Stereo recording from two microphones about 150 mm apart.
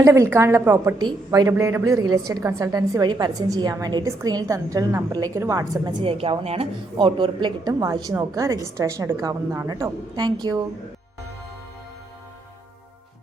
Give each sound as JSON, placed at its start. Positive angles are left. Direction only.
{"t": 0.0, "sound": "a woman's voice", "side_deg": -20}
{"t": 0.9, "sound": "a woman's voice", "side_deg": -25}